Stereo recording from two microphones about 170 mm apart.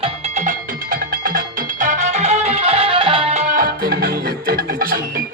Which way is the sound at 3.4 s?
55° right (ahead or behind).